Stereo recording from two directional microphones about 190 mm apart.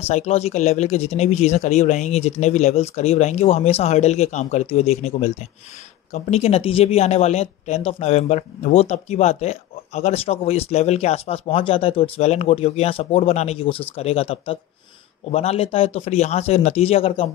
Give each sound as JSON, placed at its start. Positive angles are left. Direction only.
{"t": 0.0, "sound": "speech", "side_deg": 35}